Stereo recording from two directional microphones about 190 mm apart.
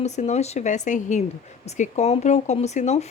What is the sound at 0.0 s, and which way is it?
Speech, 35° left (ahead or behind).